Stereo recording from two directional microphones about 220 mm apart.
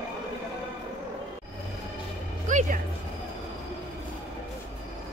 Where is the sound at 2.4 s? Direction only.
35° right (ahead or behind).